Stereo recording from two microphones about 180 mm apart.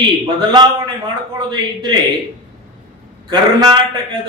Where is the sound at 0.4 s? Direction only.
25° right (ahead or behind).